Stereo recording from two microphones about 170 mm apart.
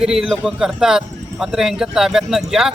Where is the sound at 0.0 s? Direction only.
Centre (ahead or behind).